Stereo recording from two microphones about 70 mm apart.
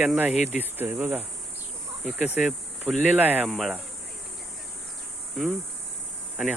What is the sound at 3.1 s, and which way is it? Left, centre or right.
Speech, right.